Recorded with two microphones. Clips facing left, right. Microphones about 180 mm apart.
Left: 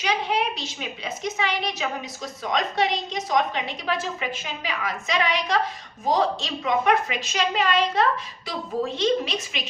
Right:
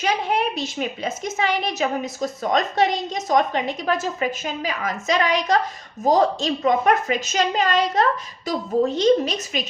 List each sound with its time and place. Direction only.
0.0 s a woman's voice: 50° right (ahead or behind)